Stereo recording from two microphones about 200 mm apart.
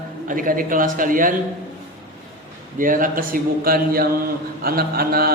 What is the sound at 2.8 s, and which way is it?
A man's voice, 45° right (ahead or behind).